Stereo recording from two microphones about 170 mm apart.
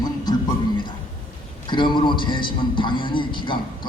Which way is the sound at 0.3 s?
25° left (ahead or behind).